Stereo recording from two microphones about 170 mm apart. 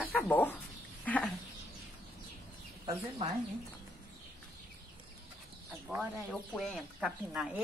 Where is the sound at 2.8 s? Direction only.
30° right (ahead or behind).